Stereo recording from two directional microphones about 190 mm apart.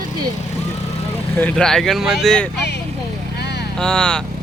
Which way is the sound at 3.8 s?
5° left (ahead or behind).